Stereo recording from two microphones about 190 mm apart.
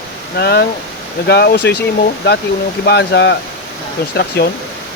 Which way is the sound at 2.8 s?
60° left (ahead or behind).